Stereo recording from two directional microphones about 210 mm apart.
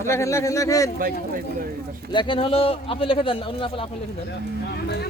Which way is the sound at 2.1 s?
25° left (ahead or behind).